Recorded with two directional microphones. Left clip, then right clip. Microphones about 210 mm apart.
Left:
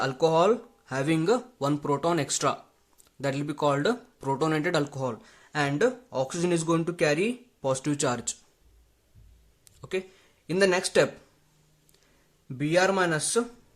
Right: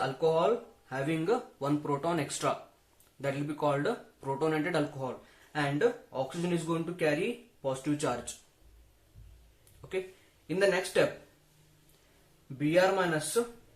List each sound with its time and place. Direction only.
0.0 s speech: 55° left (ahead or behind)
10.4 s speech: 50° left (ahead or behind)
12.5 s speech: 50° left (ahead or behind)